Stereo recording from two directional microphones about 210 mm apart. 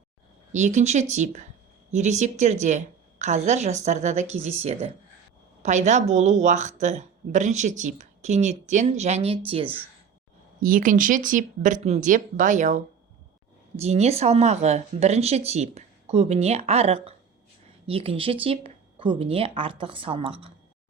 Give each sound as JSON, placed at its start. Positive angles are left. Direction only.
{"t": 0.5, "sound": "speech", "side_deg": -35}
{"t": 10.6, "sound": "speech", "side_deg": -40}